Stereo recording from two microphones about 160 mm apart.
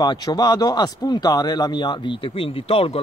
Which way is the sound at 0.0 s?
25° left (ahead or behind).